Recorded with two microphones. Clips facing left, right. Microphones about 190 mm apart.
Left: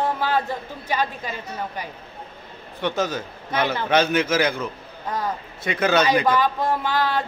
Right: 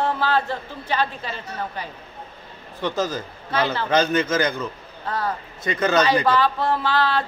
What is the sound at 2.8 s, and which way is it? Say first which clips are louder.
Speech: even; centre (ahead or behind).